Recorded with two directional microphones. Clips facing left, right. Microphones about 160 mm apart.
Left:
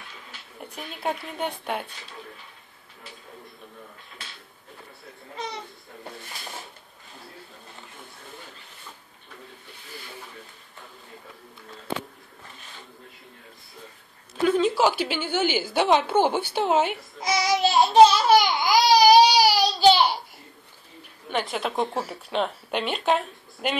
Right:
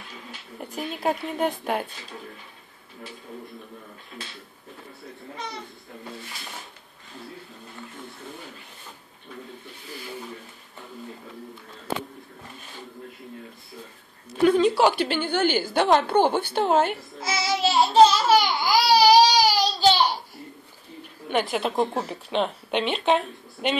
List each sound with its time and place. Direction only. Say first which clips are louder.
0.6 s speech: right 6 dB; 5° right (ahead or behind)
14.3 s a woman's voice: right 3 dB; centre (ahead or behind)
21.5 s speech: right 3 dB; centre (ahead or behind)